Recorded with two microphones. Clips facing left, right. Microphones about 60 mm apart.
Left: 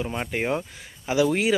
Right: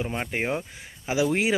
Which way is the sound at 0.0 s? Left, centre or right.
Centre.